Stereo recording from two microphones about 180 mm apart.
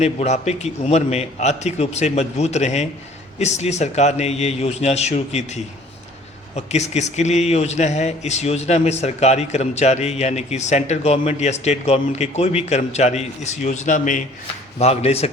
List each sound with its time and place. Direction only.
0.0 s speech: 40° left (ahead or behind)
6.6 s speech: 40° left (ahead or behind)